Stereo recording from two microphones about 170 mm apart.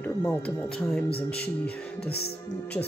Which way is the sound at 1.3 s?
70° left (ahead or behind).